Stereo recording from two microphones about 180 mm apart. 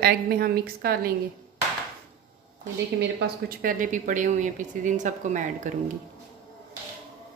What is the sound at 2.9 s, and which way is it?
Speech, 65° right (ahead or behind).